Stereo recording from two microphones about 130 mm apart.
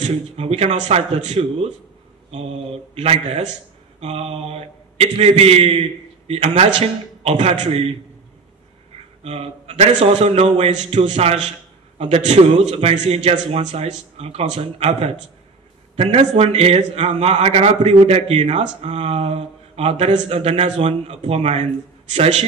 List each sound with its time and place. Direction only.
0.0 s a man's voice: 50° right (ahead or behind)
9.2 s a man's voice: 50° right (ahead or behind)